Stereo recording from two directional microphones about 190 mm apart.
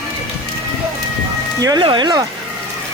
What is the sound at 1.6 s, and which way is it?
Speech, 20° right (ahead or behind).